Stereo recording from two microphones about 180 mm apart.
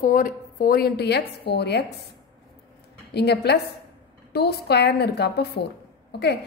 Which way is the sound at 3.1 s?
65° left (ahead or behind).